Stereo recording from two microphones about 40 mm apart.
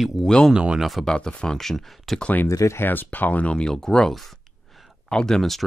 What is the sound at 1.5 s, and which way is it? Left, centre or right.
Speech, centre.